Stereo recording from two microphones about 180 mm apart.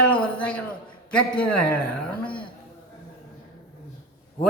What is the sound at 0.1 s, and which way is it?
A man's voice, 5° left (ahead or behind).